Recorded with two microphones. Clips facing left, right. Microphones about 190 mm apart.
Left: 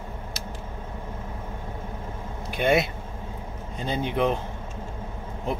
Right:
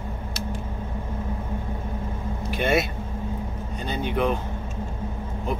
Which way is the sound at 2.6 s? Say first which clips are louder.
Left 1 dB; 20° left (ahead or behind).